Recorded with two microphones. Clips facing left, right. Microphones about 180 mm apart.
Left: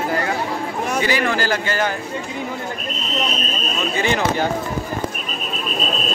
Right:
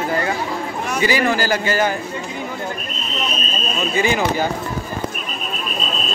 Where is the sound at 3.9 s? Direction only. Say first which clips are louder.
Right 1 dB; 5° right (ahead or behind).